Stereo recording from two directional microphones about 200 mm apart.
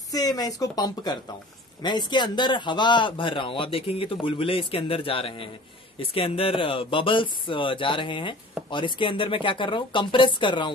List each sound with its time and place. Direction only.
0.1 s speech: 20° left (ahead or behind)